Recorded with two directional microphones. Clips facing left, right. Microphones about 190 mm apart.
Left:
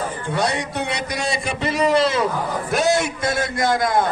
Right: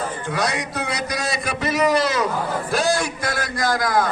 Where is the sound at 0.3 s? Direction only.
25° left (ahead or behind).